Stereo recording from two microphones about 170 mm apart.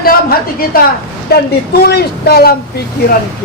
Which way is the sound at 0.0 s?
60° left (ahead or behind).